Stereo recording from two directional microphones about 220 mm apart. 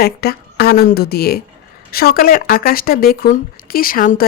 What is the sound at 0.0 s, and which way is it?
A woman's voice, 45° left (ahead or behind).